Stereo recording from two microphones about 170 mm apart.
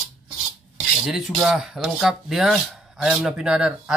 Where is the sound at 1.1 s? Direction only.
Centre (ahead or behind).